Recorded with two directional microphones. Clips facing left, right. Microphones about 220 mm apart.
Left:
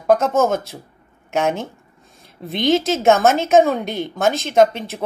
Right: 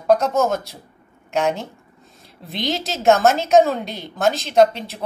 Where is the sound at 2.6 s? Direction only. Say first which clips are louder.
Left 7 dB; centre (ahead or behind).